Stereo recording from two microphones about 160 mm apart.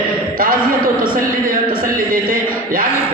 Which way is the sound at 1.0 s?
60° right (ahead or behind).